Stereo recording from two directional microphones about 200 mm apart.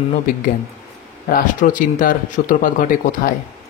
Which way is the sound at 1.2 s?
40° left (ahead or behind).